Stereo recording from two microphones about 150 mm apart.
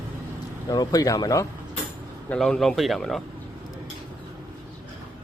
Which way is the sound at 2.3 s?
5° left (ahead or behind).